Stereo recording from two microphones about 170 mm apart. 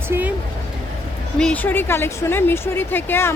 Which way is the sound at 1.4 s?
10° left (ahead or behind).